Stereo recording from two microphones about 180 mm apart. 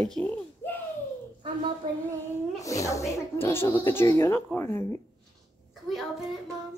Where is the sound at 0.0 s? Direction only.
5° left (ahead or behind).